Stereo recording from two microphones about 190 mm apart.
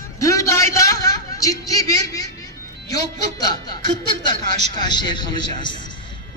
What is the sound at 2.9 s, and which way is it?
Music, 20° left (ahead or behind).